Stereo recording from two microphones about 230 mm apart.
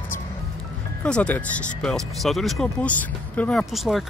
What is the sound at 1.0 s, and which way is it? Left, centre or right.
Speech, centre.